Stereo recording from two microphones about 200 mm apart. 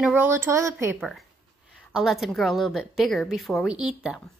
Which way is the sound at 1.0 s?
Centre (ahead or behind).